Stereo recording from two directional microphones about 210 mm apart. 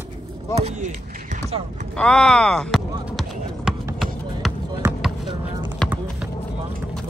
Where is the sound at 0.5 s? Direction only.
30° right (ahead or behind).